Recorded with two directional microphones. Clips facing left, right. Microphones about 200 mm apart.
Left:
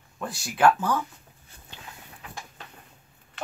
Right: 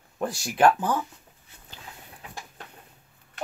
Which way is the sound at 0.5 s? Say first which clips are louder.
Even; 20° right (ahead or behind).